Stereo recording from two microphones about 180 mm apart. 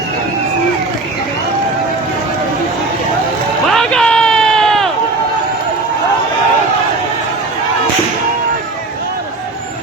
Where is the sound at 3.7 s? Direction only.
5° left (ahead or behind).